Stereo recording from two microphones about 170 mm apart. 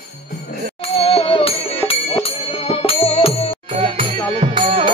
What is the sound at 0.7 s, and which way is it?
Music, 35° left (ahead or behind).